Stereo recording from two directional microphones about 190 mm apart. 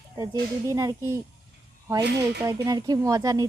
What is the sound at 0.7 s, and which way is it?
Speech, 15° right (ahead or behind).